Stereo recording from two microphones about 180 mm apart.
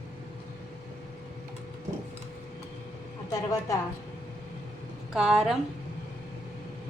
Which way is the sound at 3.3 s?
20° left (ahead or behind).